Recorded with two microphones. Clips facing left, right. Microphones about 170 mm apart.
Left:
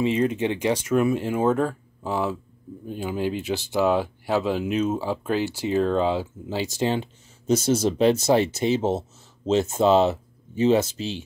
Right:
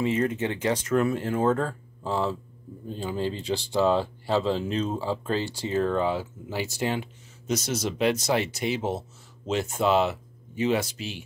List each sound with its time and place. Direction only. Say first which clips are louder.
0.0 s speech: left 3 dB; 20° left (ahead or behind)